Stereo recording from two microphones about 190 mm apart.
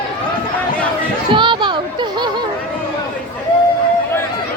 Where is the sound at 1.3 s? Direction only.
25° right (ahead or behind).